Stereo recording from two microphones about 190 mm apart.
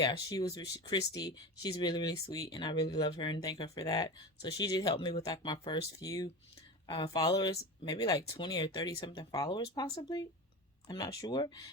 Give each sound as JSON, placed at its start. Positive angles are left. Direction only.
{"t": 0.0, "sound": "speech", "side_deg": 20}